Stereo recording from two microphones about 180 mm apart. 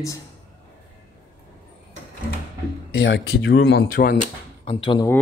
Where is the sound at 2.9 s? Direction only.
90° left; by 3.8 s 65° left (ahead or behind).